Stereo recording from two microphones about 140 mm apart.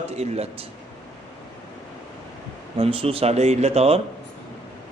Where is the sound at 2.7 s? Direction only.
40° right (ahead or behind).